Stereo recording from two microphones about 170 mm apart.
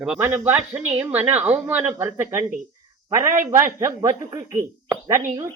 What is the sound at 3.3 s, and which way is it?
Speech, 50° right (ahead or behind).